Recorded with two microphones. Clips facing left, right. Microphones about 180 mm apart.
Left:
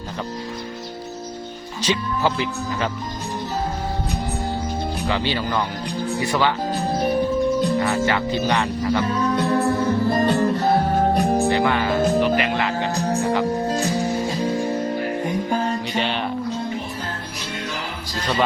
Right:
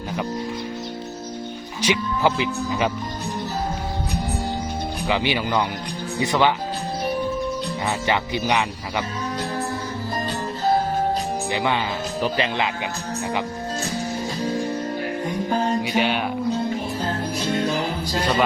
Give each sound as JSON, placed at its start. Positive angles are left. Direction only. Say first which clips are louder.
{"t": 1.9, "sound": "speech", "louder": "right 1 dB", "side_deg": -15}
{"t": 5.0, "sound": "speech", "louder": "right 2 dB", "side_deg": -15}
{"t": 7.8, "sound": "speech", "louder": "left 3 dB", "side_deg": -20}
{"t": 9.3, "sound": "music", "louder": "left 7 dB", "side_deg": 60}
{"t": 11.5, "sound": "speech", "louder": "left 4 dB", "side_deg": -20}
{"t": 15.9, "sound": "speech", "louder": "right 2 dB", "side_deg": -5}